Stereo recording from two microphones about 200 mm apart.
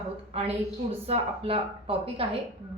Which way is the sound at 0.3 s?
30° right (ahead or behind).